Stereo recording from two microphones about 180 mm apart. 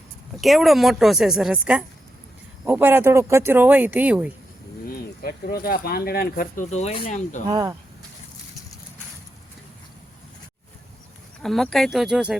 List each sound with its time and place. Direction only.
0.4 s a woman's voice: centre (ahead or behind)
4.9 s speech: 55° left (ahead or behind)
7.5 s speech: 20° right (ahead or behind)
11.4 s a woman's voice: centre (ahead or behind)